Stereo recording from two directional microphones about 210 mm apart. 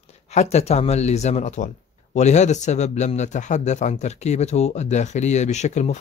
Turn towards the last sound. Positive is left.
turn(degrees=35)  # may be behind; listen again after turning